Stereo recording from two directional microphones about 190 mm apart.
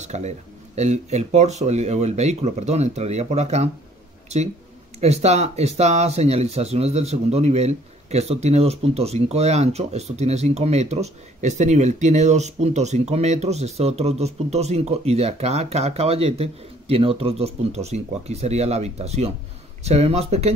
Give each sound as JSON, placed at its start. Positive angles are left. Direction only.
{"t": 0.0, "sound": "speech", "side_deg": -35}